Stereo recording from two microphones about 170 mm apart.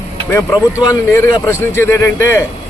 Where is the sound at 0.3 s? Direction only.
20° left (ahead or behind).